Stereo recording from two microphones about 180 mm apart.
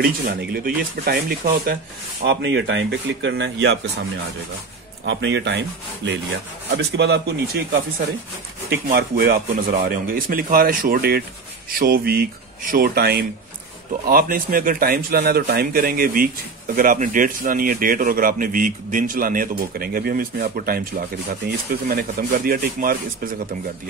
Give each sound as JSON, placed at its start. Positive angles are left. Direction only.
{"t": 0.0, "sound": "speech", "side_deg": -55}
{"t": 2.2, "sound": "speech", "side_deg": -80}
{"t": 5.0, "sound": "speech", "side_deg": -80}
{"t": 6.8, "sound": "speech", "side_deg": -65}
{"t": 8.9, "sound": "speech", "side_deg": -55}